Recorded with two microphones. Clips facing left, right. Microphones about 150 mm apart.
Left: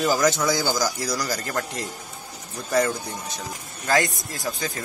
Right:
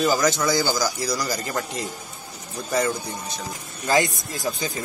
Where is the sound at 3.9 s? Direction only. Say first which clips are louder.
Right 1 dB; 25° right (ahead or behind).